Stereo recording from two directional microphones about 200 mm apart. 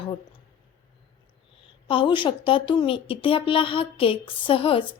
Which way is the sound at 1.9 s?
25° left (ahead or behind).